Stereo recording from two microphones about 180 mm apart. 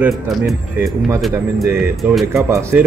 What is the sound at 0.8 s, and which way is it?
Speech, 10° right (ahead or behind).